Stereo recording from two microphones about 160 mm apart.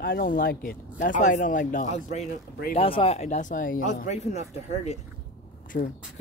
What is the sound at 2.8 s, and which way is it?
Speech, 35° left (ahead or behind).